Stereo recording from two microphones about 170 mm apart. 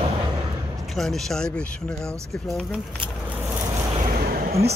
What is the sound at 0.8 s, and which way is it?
Speech, centre (ahead or behind).